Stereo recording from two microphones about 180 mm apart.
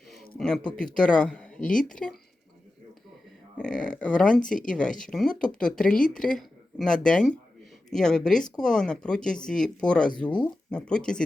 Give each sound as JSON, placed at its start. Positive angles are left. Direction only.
{"t": 0.3, "sound": "speech", "side_deg": 5}
{"t": 3.6, "sound": "speech", "side_deg": 5}